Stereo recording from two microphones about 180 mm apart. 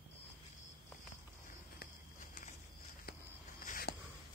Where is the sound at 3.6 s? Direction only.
55° left (ahead or behind).